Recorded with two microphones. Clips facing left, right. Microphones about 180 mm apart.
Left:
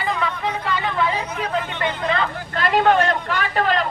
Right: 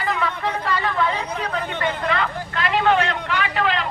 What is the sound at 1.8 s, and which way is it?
Hubbub, 30° left (ahead or behind).